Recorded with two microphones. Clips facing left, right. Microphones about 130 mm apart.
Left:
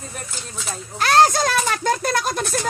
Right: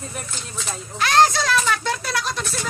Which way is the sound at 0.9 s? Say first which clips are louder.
Left 2 dB; 40° left (ahead or behind).